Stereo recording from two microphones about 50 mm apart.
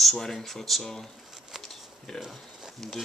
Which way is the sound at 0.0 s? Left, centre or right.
Centre.